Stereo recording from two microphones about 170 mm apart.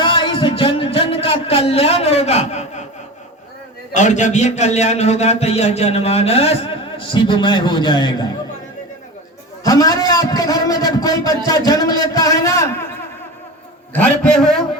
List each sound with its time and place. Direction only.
0.0 s a sound: 30° left (ahead or behind)
3.9 s a man's voice: 45° left (ahead or behind); by 8.3 s 25° left (ahead or behind)
9.6 s a man's voice: 20° left (ahead or behind)
13.9 s a man's voice: 5° left (ahead or behind)